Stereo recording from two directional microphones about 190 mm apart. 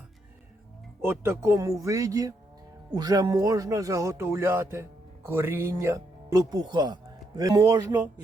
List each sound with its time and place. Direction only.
1.0 s speech: 15° right (ahead or behind)